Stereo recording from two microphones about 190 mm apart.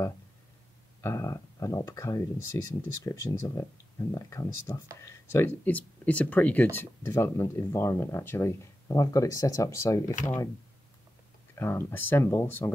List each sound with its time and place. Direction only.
1.0 s speech: 15° left (ahead or behind)
11.5 s speech: 10° left (ahead or behind)